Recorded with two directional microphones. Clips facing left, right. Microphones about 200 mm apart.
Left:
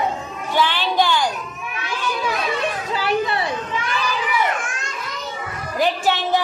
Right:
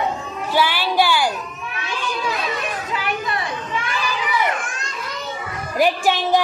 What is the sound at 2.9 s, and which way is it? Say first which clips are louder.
Children playing: left 5 dB; 30° left (ahead or behind).